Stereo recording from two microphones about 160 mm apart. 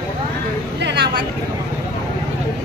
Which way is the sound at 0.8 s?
90° right.